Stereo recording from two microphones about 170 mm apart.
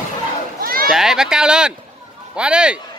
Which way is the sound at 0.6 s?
60° right (ahead or behind).